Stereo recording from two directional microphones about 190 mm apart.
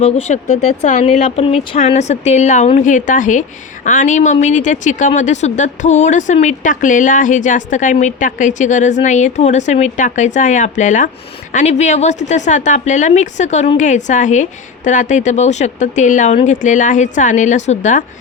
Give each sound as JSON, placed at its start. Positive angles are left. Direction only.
{"t": 0.0, "sound": "speech", "side_deg": 35}